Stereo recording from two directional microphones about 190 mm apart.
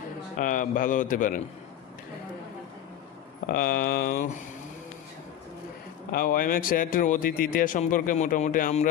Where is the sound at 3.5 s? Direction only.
50° left (ahead or behind).